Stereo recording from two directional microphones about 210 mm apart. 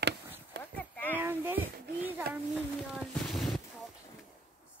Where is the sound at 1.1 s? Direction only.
10° right (ahead or behind).